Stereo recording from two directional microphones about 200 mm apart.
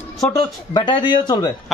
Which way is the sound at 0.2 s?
20° left (ahead or behind).